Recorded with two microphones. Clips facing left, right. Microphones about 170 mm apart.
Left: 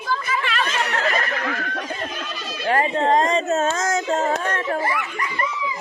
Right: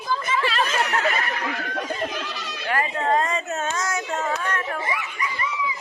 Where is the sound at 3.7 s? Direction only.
45° left (ahead or behind).